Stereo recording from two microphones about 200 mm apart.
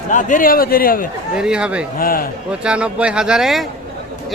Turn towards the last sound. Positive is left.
turn(degrees=0)  # may be behind; listen again after turning